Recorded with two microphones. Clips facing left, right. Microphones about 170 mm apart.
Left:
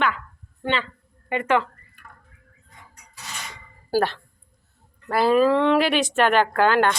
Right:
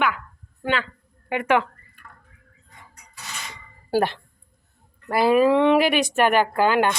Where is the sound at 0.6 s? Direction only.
5° right (ahead or behind).